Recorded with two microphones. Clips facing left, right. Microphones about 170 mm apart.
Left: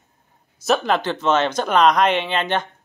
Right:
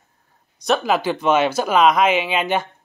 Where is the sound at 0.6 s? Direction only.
Centre (ahead or behind).